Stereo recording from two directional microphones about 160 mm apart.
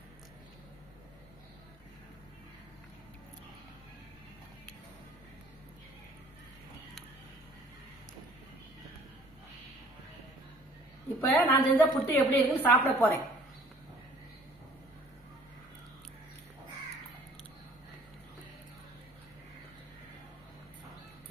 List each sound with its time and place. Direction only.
11.1 s a woman's voice: 15° left (ahead or behind)